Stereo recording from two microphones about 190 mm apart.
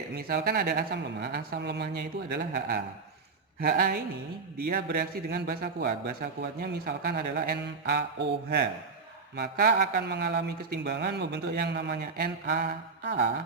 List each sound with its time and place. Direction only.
0.1 s a man's voice: 55° right (ahead or behind)